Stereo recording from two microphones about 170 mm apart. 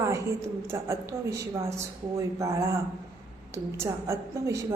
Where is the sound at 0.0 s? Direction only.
15° right (ahead or behind).